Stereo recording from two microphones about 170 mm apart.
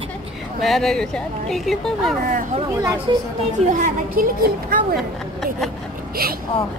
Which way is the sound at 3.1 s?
25° right (ahead or behind).